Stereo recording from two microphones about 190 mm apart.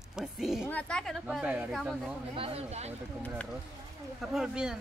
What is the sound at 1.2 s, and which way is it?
Speech, 5° right (ahead or behind).